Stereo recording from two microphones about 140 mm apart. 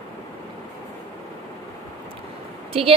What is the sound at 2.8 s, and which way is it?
Speech, 45° right (ahead or behind).